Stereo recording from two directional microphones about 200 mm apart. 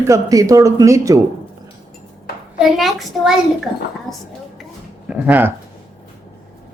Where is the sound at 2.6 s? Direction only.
Centre (ahead or behind).